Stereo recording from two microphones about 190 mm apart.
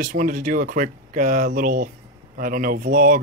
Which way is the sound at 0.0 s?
50° right (ahead or behind).